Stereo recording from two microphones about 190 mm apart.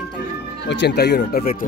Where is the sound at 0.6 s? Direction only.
60° left (ahead or behind).